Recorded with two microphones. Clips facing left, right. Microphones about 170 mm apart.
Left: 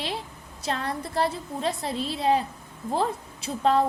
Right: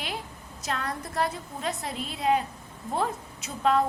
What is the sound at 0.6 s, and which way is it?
A woman's voice, 30° left (ahead or behind).